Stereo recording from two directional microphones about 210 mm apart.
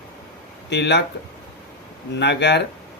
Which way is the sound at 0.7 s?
55° left (ahead or behind).